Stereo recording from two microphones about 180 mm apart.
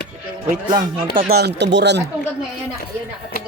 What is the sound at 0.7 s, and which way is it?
Speech, 30° right (ahead or behind).